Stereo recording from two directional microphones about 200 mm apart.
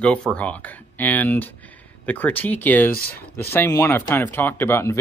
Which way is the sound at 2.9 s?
50° left (ahead or behind).